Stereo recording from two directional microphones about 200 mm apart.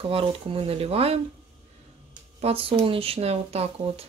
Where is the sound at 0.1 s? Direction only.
25° right (ahead or behind).